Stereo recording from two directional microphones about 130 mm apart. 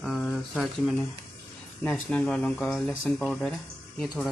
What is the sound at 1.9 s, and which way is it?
Speech, 10° left (ahead or behind).